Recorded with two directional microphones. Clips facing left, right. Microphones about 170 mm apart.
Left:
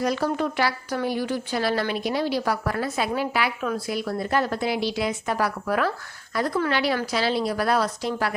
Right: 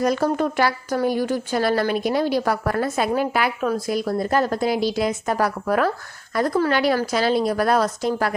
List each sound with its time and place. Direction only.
0.0 s speech: 45° right (ahead or behind)